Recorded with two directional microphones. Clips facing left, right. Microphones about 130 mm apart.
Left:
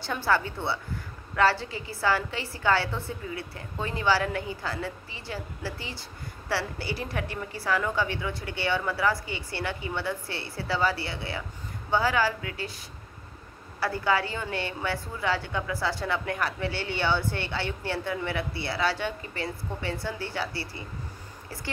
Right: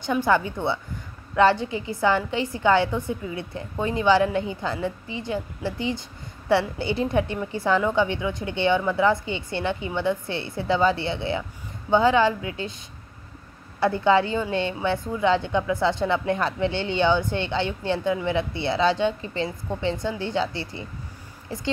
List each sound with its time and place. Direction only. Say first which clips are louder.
0.0 s a woman's voice: right 5 dB; 15° right (ahead or behind)